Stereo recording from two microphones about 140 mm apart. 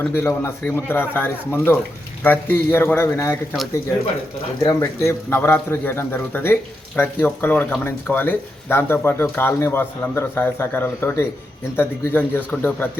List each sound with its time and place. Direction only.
0.1 s speech: 20° left (ahead or behind)
4.6 s speech: 20° left (ahead or behind)